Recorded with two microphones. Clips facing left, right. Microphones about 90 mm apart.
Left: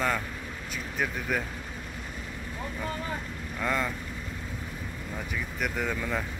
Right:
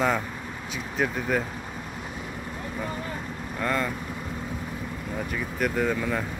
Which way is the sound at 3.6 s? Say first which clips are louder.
Right 2 dB; 5° left (ahead or behind).